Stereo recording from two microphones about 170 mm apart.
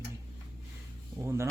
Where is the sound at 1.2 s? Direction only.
15° right (ahead or behind).